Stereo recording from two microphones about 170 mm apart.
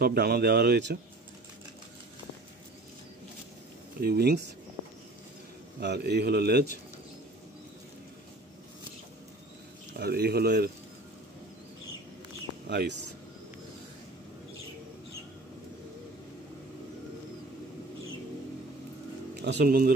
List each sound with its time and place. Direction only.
0.0 s speech: 65° right (ahead or behind); by 0.9 s 80° right
4.0 s a man's voice: 70° right (ahead or behind)
5.8 s a man's voice: 75° right (ahead or behind)
9.9 s a man's voice: 70° right (ahead or behind)
12.6 s speech: 90° right
19.4 s speech: 70° right (ahead or behind)